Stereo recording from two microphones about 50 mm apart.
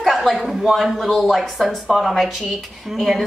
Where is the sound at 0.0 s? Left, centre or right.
Centre.